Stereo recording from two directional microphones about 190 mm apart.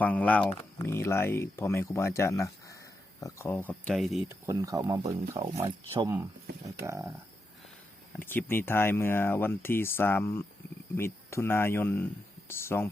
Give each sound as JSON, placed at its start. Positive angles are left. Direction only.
{"t": 0.0, "sound": "speech", "side_deg": 10}
{"t": 4.3, "sound": "speech", "side_deg": -15}
{"t": 6.7, "sound": "speech", "side_deg": -15}
{"t": 8.1, "sound": "speech", "side_deg": 10}